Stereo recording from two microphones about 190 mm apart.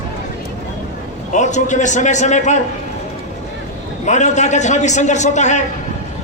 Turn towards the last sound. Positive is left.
turn(degrees=40)  # may be behind; listen again after turning